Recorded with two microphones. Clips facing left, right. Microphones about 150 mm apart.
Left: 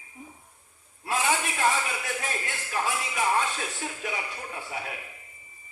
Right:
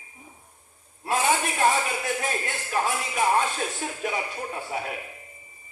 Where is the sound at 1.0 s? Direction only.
45° right (ahead or behind).